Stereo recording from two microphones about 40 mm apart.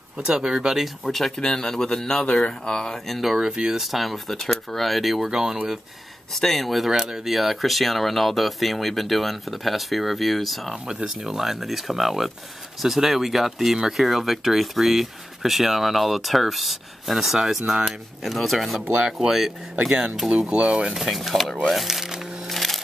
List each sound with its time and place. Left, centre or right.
0.2 s speech: right
0.7 s speech: centre
1.4 s speech: centre
3.1 s speech: centre
3.3 s speech: right
3.8 s speech: centre
5.3 s speech: centre
6.3 s speech: centre
6.9 s speech: centre
7.3 s speech: centre
11.1 s speech: centre
20.3 s speech: right
20.9 s speech: centre
22.5 s music: centre